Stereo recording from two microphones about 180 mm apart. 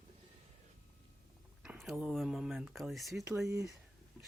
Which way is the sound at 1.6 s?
Centre (ahead or behind).